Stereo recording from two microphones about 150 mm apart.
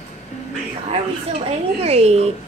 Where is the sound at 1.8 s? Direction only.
45° right (ahead or behind).